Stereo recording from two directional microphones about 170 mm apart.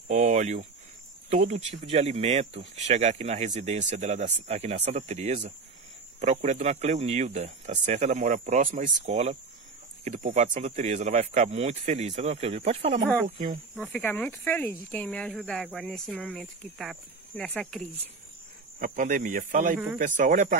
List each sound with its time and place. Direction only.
0.1 s speech: 45° right (ahead or behind)
13.7 s speech: 10° left (ahead or behind)
18.8 s speech: 50° right (ahead or behind)